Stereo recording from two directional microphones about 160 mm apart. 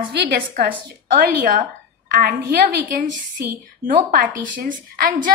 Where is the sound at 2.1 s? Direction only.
70° right (ahead or behind).